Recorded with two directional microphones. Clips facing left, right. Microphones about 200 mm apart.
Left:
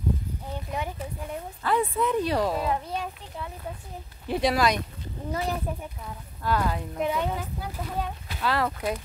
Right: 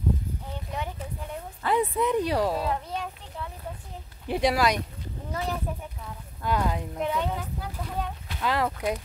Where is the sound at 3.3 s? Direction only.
10° left (ahead or behind).